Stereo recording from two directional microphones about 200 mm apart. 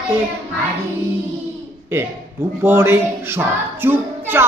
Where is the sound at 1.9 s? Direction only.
10° right (ahead or behind).